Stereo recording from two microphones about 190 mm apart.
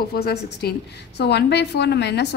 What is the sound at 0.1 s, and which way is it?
A woman's voice, 55° left (ahead or behind).